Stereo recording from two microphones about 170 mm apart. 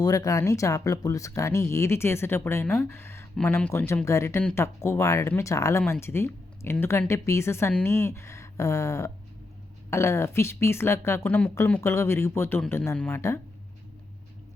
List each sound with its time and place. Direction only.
0.0 s speech: 20° left (ahead or behind)